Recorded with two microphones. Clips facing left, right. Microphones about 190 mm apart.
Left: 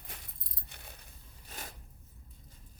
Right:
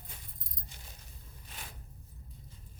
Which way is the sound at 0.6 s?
60° left (ahead or behind).